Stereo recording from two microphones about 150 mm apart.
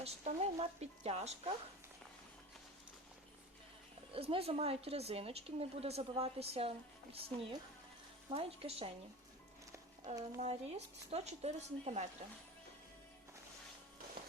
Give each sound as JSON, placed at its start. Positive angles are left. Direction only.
{"t": 0.0, "sound": "speech", "side_deg": -45}
{"t": 4.1, "sound": "a woman's voice", "side_deg": -40}
{"t": 10.4, "sound": "speech", "side_deg": -45}